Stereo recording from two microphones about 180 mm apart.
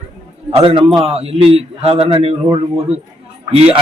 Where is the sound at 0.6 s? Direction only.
25° right (ahead or behind).